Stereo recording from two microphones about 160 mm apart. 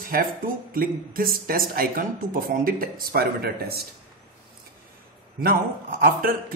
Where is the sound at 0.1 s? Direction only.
65° right (ahead or behind).